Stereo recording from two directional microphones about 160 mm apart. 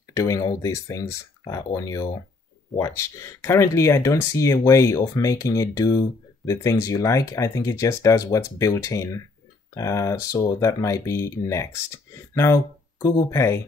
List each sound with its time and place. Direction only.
0.1 s speech: 20° left (ahead or behind)